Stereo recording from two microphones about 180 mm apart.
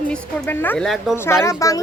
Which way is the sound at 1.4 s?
15° left (ahead or behind).